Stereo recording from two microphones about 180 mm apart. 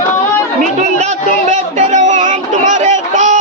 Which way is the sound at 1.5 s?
40° right (ahead or behind).